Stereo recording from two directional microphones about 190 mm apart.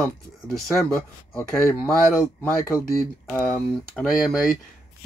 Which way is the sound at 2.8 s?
55° left (ahead or behind).